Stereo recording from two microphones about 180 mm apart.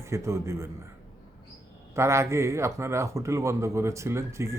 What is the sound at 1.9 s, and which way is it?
Speech, 15° right (ahead or behind).